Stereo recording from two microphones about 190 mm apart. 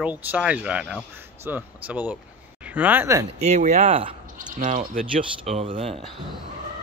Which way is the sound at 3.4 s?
35° right (ahead or behind).